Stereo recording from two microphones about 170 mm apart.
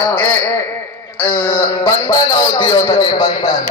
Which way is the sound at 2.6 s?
30° left (ahead or behind).